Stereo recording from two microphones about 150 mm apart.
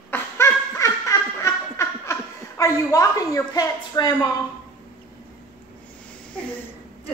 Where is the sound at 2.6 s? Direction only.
20° left (ahead or behind).